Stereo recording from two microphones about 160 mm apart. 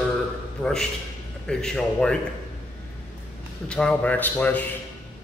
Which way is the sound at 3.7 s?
5° left (ahead or behind).